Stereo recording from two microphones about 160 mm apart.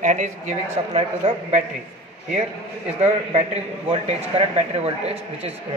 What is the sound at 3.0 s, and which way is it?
A man's voice, 40° right (ahead or behind).